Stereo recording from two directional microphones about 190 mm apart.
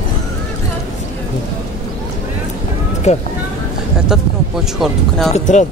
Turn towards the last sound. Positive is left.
turn(degrees=40)  # may be behind; listen again after turning